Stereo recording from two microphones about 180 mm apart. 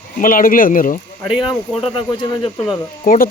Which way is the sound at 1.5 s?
25° left (ahead or behind).